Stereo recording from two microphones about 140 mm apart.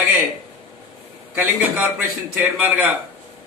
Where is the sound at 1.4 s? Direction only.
10° right (ahead or behind).